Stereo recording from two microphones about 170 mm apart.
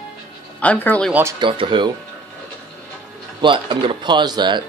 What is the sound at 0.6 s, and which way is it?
Speech, 10° left (ahead or behind).